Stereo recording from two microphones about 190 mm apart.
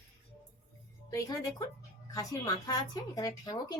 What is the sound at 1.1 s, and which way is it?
Speech, 20° left (ahead or behind).